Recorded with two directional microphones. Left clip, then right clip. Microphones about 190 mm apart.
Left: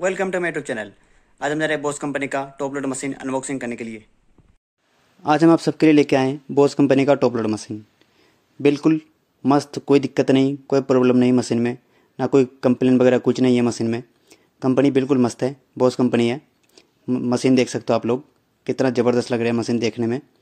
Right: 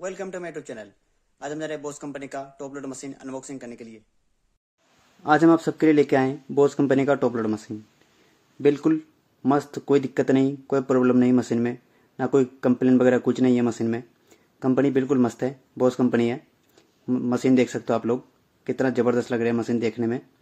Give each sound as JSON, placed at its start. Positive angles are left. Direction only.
{"t": 0.0, "sound": "speech", "side_deg": -5}
{"t": 5.2, "sound": "speech", "side_deg": 30}